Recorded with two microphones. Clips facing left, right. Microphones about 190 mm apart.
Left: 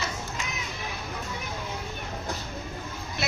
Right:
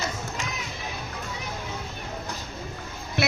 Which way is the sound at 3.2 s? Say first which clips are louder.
Right 6 dB; 65° right (ahead or behind).